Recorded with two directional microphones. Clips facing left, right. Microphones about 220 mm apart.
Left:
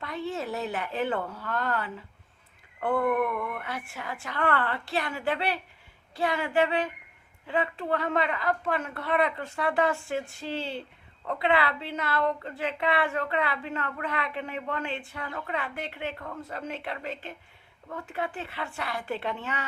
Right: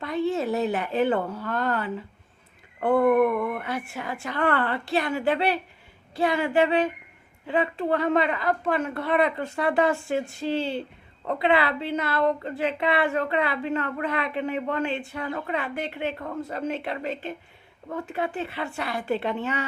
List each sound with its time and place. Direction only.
0.0 s speech: 20° right (ahead or behind)